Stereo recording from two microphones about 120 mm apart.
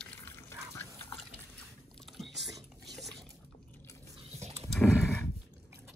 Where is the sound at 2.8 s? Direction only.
Centre (ahead or behind).